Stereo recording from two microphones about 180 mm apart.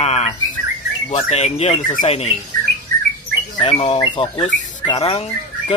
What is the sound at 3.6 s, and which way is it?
Speech, 30° left (ahead or behind).